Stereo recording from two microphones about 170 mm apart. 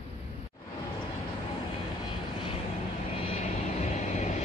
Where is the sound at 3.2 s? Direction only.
35° left (ahead or behind).